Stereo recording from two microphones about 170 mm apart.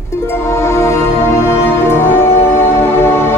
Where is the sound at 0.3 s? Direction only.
15° left (ahead or behind).